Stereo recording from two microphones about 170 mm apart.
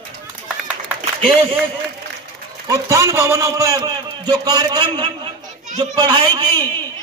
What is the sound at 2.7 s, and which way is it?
A man's voice, 15° right (ahead or behind).